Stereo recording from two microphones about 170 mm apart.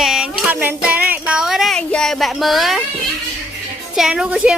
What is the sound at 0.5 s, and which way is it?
Music, 10° right (ahead or behind).